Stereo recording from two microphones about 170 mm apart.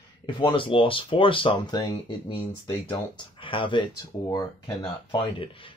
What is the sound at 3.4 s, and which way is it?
Speech, 30° left (ahead or behind).